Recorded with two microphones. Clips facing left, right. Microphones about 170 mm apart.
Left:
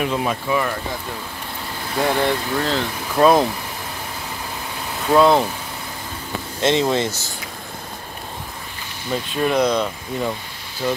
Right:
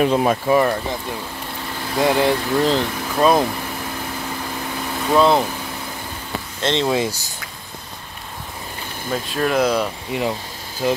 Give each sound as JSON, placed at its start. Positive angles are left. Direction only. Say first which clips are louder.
{"t": 0.0, "sound": "speech", "louder": "right 5 dB", "side_deg": -40}
{"t": 2.0, "sound": "speech", "louder": "right 2 dB", "side_deg": -10}
{"t": 3.2, "sound": "speech", "louder": "left 2 dB", "side_deg": 0}
{"t": 5.1, "sound": "speech", "louder": "left 1 dB", "side_deg": 0}
{"t": 6.6, "sound": "speech", "louder": "left 3 dB", "side_deg": 10}
{"t": 6.9, "sound": "speech", "louder": "right 1 dB", "side_deg": -10}
{"t": 9.1, "sound": "speech", "louder": "even", "side_deg": 0}